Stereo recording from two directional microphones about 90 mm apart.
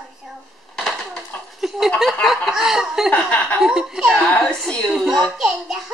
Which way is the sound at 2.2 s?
5° right (ahead or behind).